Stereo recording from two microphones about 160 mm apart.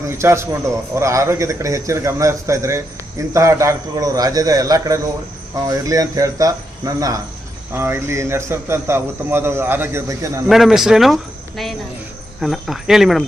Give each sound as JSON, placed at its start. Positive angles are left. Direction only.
{"t": 0.1, "sound": "a man's voice", "side_deg": -15}
{"t": 10.5, "sound": "speech", "side_deg": 0}